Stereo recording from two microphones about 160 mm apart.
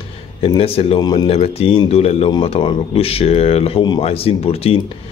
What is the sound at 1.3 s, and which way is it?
Speech, 40° left (ahead or behind).